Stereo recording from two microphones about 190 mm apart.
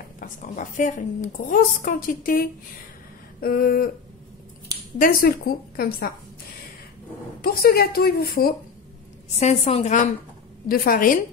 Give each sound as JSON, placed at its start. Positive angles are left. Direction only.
{"t": 0.2, "sound": "a woman's voice", "side_deg": 45}
{"t": 4.9, "sound": "a woman's voice", "side_deg": 50}
{"t": 7.4, "sound": "a woman's voice", "side_deg": 55}
{"t": 9.4, "sound": "a woman's voice", "side_deg": 30}
{"t": 10.7, "sound": "a woman's voice", "side_deg": 50}